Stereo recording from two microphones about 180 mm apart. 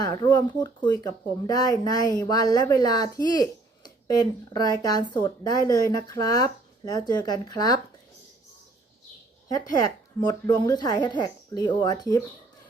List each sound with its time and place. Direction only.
0.0 s a woman's voice: 25° left (ahead or behind)
9.8 s a woman's voice: 20° left (ahead or behind)